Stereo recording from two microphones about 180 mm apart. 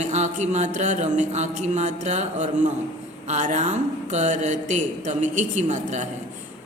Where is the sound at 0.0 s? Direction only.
40° right (ahead or behind).